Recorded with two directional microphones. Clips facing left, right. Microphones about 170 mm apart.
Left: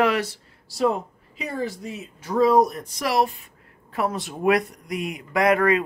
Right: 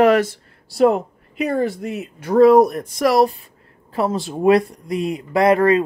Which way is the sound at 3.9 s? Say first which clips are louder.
Right 5 dB; 30° right (ahead or behind).